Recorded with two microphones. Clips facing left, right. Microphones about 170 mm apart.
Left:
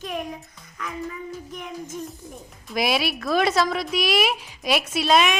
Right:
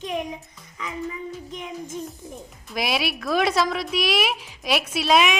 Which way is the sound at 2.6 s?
Centre (ahead or behind).